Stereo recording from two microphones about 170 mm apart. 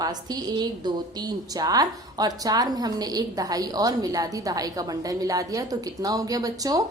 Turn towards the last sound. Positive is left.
turn(degrees=-20)  # may be behind; listen again after turning